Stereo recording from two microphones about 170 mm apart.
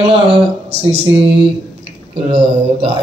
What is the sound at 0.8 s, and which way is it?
Speech, 35° right (ahead or behind).